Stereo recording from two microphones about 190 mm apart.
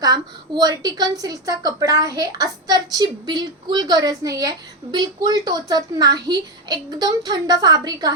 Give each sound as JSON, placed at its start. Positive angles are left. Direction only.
{"t": 0.0, "sound": "a woman's voice", "side_deg": -20}